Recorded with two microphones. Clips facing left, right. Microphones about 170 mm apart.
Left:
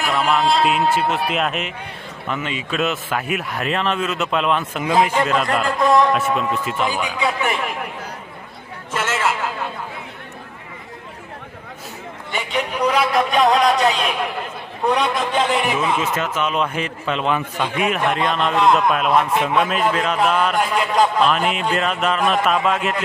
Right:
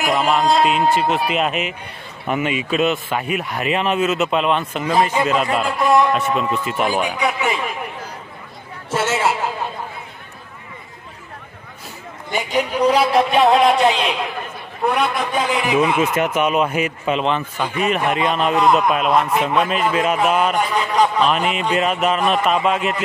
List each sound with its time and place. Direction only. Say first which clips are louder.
0.0 s a sound: right 2 dB; 40° right (ahead or behind)
0.9 s a man's voice: right 2 dB; centre (ahead or behind)
2.2 s a man's voice: right 5 dB; 15° right (ahead or behind); by 5.1 s 5° left (ahead or behind)
5.1 s a man's voice: right 1 dB; 5° right (ahead or behind)
7.2 s speech: right 1 dB; 15° right (ahead or behind)
8.9 s a sound: right 3 dB; 35° right (ahead or behind)
12.3 s speech: right 3 dB; 40° right (ahead or behind)
14.9 s a man's voice: even; 10° right (ahead or behind)
16.0 s a man's voice: right 4 dB; 15° right (ahead or behind)
17.2 s a man's voice: even; centre (ahead or behind)